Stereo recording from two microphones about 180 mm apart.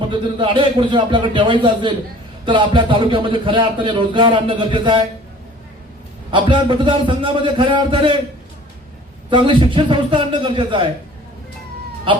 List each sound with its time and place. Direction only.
0.0 s speech: 25° right (ahead or behind)
6.3 s speech: 25° right (ahead or behind)
9.3 s speech: 25° right (ahead or behind)